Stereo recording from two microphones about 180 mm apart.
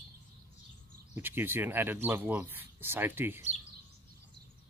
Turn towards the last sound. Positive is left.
turn(degrees=-10)  # may be behind; listen again after turning